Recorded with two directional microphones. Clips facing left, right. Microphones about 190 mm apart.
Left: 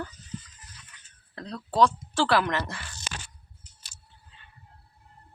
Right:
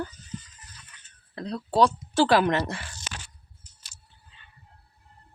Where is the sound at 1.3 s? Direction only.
10° right (ahead or behind).